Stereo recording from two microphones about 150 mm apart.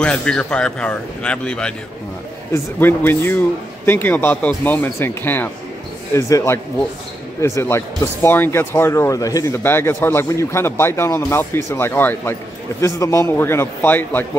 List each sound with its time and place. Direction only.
0.0 s speech: 5° left (ahead or behind)